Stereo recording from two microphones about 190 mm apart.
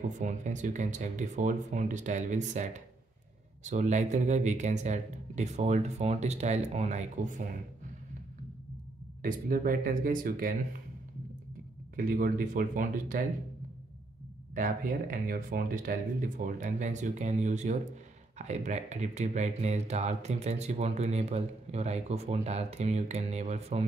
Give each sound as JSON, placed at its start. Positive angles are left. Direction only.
{"t": 0.2, "sound": "speech", "side_deg": -40}
{"t": 9.2, "sound": "speech", "side_deg": -50}
{"t": 11.9, "sound": "speech", "side_deg": -45}
{"t": 14.5, "sound": "speech", "side_deg": -45}